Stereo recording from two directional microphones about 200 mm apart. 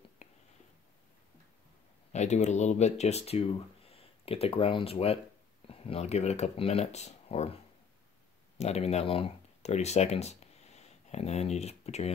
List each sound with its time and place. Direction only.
2.1 s speech: 35° left (ahead or behind)